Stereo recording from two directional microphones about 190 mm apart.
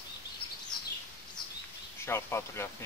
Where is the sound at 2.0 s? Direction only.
15° left (ahead or behind).